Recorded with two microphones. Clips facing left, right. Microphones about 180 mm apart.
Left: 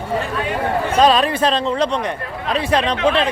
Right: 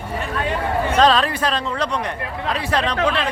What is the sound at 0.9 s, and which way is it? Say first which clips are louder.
Speech: left 2 dB; 15° left (ahead or behind).